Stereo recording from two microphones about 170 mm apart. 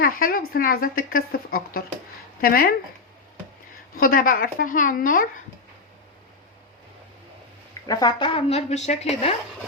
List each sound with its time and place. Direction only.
0.0 s a woman's voice: 55° left (ahead or behind)
3.9 s a woman's voice: 55° left (ahead or behind)
7.7 s speech: 20° left (ahead or behind); by 9.3 s 40° left (ahead or behind)